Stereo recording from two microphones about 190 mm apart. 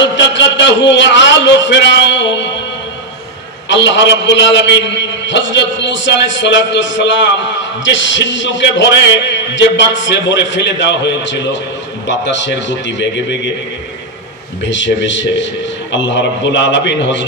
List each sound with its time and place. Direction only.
0.1 s a sound: 70° left (ahead or behind)
3.6 s a man's voice: 70° left (ahead or behind)
14.7 s a man's voice: 75° left (ahead or behind)